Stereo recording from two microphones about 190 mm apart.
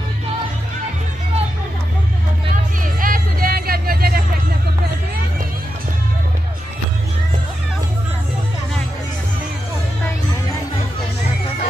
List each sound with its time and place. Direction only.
2.5 s music: 45° right (ahead or behind)